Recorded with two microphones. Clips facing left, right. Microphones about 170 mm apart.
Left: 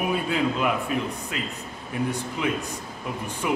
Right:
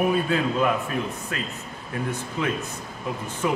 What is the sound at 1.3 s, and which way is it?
A man's voice, 15° left (ahead or behind).